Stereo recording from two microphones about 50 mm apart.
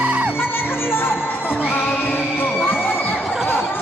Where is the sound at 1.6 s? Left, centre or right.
Left.